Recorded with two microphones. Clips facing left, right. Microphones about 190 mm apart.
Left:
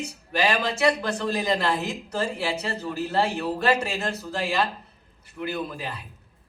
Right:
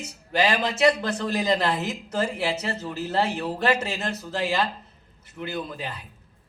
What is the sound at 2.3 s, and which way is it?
A man's voice, 25° right (ahead or behind).